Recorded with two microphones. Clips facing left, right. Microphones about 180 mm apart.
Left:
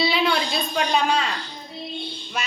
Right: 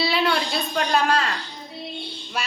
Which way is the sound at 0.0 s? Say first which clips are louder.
Left 1 dB; 5° right (ahead or behind).